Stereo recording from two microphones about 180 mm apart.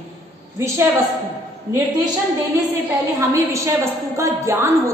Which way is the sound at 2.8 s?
20° right (ahead or behind).